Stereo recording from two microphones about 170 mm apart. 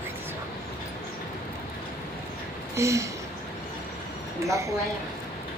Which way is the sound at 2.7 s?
15° right (ahead or behind).